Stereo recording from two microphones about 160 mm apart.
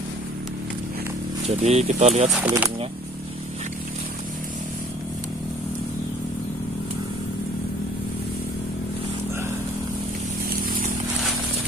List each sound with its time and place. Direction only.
1.5 s speech: 40° right (ahead or behind)
2.4 s speech: 10° right (ahead or behind)